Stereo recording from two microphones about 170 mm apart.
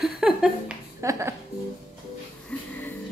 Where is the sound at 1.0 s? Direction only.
15° right (ahead or behind).